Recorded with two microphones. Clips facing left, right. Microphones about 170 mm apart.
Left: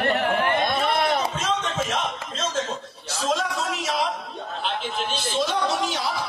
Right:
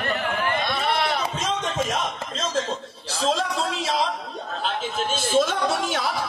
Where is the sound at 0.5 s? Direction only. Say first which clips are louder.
Left 2 dB; 50° left (ahead or behind).